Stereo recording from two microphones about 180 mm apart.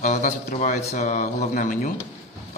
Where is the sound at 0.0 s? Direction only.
40° left (ahead or behind).